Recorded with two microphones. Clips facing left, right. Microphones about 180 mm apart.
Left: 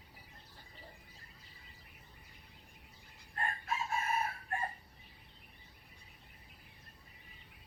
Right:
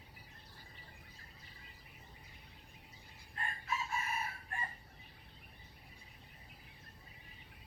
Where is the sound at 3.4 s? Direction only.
55° left (ahead or behind).